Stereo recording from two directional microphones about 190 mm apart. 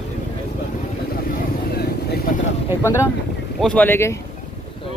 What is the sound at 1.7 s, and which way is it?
Vehicle, 55° left (ahead or behind).